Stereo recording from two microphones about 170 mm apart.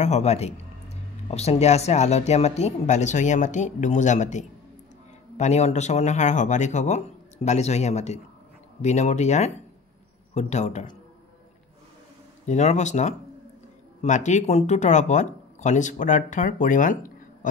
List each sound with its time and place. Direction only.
0.0 s speech: 40° left (ahead or behind)
12.4 s speech: 40° left (ahead or behind)